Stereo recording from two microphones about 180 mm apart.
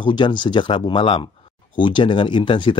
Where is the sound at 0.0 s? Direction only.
25° left (ahead or behind).